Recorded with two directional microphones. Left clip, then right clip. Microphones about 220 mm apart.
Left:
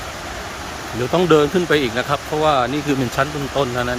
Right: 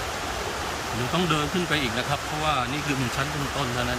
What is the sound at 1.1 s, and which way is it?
Speech, 20° left (ahead or behind).